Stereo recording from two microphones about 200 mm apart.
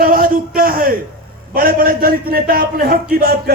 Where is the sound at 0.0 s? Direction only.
45° right (ahead or behind).